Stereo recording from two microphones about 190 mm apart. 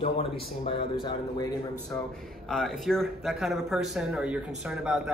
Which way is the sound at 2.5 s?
Centre (ahead or behind).